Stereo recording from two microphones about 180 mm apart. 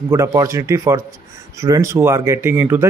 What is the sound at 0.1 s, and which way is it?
Speech, 15° right (ahead or behind).